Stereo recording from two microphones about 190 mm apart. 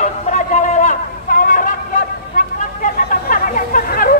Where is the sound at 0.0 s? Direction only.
40° left (ahead or behind).